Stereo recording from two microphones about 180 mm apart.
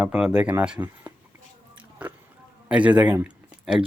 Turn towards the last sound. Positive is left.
turn(degrees=-5)  # may be behind; listen again after turning